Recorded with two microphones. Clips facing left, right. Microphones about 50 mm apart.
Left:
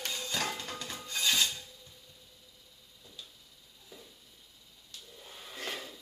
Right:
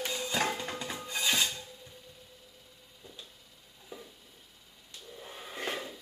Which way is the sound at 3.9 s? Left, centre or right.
Right.